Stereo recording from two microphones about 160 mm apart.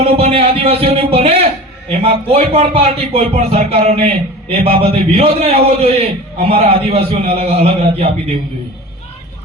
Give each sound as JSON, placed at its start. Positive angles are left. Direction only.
{"t": 0.0, "sound": "a man's voice", "side_deg": -40}